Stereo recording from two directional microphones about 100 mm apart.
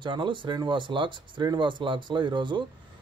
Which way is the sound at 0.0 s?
50° right (ahead or behind).